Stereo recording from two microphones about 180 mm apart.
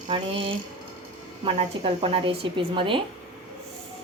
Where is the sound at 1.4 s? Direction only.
35° right (ahead or behind).